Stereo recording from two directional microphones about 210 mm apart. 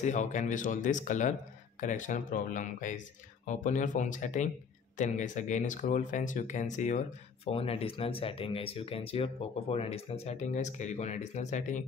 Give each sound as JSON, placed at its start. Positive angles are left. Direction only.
{"t": 0.0, "sound": "speech", "side_deg": 35}